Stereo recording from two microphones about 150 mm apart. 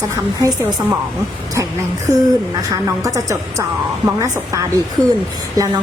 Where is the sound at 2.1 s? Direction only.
25° right (ahead or behind).